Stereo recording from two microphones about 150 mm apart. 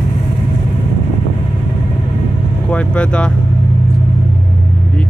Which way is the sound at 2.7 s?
10° left (ahead or behind).